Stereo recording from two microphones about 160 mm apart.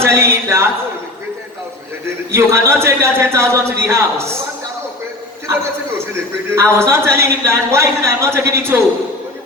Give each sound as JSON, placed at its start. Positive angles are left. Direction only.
{"t": 0.0, "sound": "a man's voice", "side_deg": -15}
{"t": 2.3, "sound": "a man's voice", "side_deg": -15}
{"t": 6.6, "sound": "a man's voice", "side_deg": -15}